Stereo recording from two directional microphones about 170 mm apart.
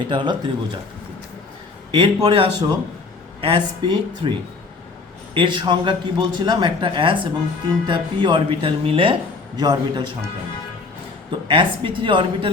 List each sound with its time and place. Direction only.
0.1 s speech: 30° right (ahead or behind)
1.9 s speech: 30° right (ahead or behind)
11.3 s speech: 30° right (ahead or behind)